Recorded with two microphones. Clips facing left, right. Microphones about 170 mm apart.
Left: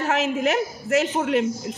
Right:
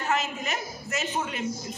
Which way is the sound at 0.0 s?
85° left.